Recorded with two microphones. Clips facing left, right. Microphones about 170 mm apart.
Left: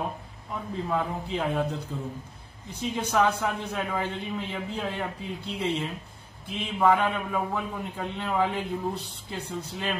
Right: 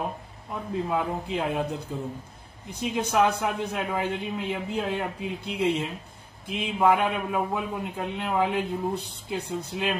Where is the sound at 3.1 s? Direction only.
15° right (ahead or behind).